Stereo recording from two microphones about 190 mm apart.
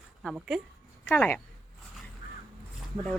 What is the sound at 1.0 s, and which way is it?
Speech, 10° left (ahead or behind).